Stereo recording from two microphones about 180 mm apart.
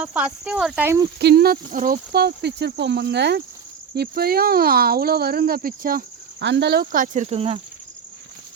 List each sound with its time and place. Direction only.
0.0 s speech: 5° right (ahead or behind)
1.2 s speech: 65° right (ahead or behind)
6.4 s speech: 70° right (ahead or behind); by 7.6 s 30° right (ahead or behind)